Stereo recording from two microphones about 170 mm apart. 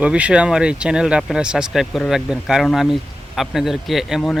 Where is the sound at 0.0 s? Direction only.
5° right (ahead or behind).